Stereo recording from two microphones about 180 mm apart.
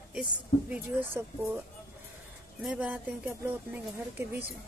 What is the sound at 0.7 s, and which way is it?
Speech, 10° right (ahead or behind).